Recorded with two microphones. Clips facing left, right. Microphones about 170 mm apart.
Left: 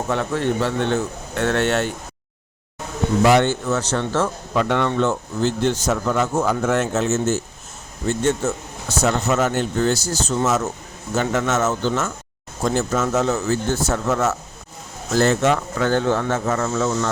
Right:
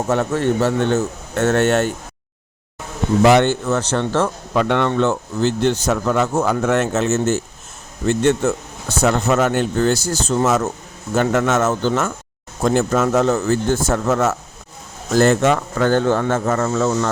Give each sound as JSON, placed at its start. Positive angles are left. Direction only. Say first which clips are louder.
{"t": 0.1, "sound": "speech", "louder": "right 3 dB", "side_deg": -45}
{"t": 3.2, "sound": "speech", "louder": "right 3 dB", "side_deg": -65}
{"t": 5.0, "sound": "speech", "louder": "right 2 dB", "side_deg": -75}